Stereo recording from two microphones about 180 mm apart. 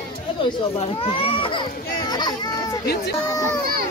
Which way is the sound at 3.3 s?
15° left (ahead or behind).